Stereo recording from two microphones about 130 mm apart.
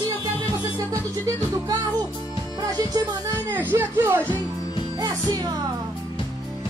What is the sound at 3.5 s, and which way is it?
Speech, 15° right (ahead or behind).